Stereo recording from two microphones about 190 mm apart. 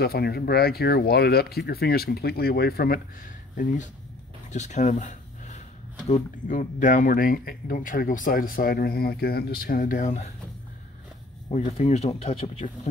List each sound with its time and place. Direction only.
0.0 s speech: 55° left (ahead or behind)
3.5 s speech: 40° left (ahead or behind)
4.5 s a sound: 40° left (ahead or behind)
6.0 s speech: 40° left (ahead or behind)
11.4 s speech: 35° left (ahead or behind)